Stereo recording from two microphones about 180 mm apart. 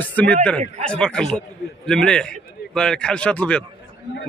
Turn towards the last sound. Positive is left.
turn(degrees=5)  # may be behind; listen again after turning